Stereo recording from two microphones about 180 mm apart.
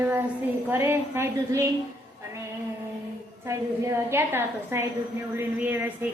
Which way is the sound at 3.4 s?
15° right (ahead or behind).